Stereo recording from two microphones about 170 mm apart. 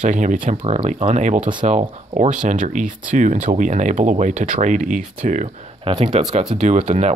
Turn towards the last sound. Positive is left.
turn(degrees=-40)  # may be behind; listen again after turning